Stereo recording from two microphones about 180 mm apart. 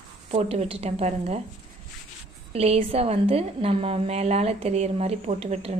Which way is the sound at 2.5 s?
35° right (ahead or behind).